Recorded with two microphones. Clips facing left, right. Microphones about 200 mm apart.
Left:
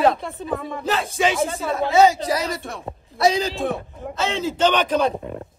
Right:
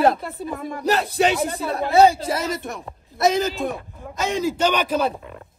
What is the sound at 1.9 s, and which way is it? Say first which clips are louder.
Speech: right 1 dB; 30° right (ahead or behind).